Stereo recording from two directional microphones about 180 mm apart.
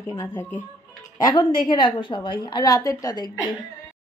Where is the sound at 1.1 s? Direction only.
20° left (ahead or behind).